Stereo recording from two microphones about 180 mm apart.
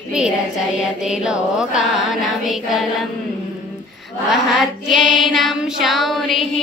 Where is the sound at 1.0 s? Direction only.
5° right (ahead or behind).